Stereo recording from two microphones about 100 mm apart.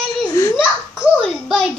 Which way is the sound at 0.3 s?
30° left (ahead or behind).